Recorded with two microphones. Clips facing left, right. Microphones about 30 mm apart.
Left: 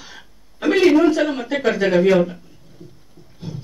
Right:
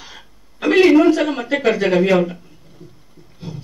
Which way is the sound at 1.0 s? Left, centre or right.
Centre.